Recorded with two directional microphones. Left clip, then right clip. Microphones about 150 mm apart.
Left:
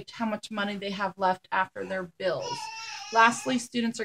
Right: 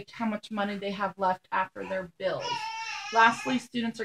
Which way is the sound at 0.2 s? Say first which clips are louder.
Left 1 dB; 5° left (ahead or behind).